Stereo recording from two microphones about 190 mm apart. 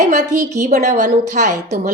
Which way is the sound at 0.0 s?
40° right (ahead or behind).